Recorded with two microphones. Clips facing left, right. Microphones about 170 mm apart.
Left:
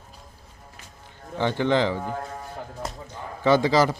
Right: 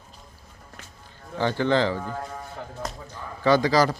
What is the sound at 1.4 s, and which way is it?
A man's voice, 15° left (ahead or behind).